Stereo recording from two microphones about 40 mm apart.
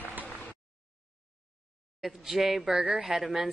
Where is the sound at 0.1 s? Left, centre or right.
Right.